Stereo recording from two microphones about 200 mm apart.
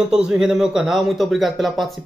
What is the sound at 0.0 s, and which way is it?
A man's voice, 5° right (ahead or behind).